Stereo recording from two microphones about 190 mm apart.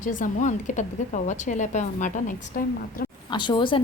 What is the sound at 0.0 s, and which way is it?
A woman's voice, 45° left (ahead or behind).